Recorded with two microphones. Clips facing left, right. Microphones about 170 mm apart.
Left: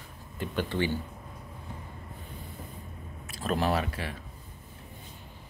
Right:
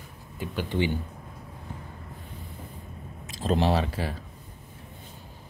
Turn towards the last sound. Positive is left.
turn(degrees=-30)  # may be behind; listen again after turning